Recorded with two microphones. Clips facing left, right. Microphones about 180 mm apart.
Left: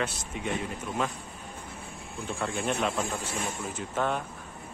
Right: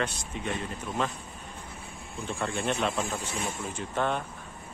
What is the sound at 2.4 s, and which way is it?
Speech, centre (ahead or behind).